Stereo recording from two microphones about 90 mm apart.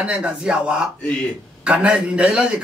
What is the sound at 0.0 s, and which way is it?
A man's voice, 10° right (ahead or behind).